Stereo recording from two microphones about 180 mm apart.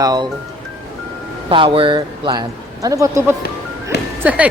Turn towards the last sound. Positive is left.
turn(degrees=-10)  # may be behind; listen again after turning